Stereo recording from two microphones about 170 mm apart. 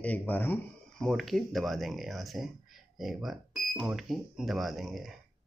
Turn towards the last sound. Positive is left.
turn(degrees=0)  # may be behind; listen again after turning